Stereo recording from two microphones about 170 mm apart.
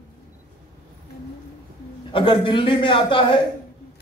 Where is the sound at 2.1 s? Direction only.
30° left (ahead or behind).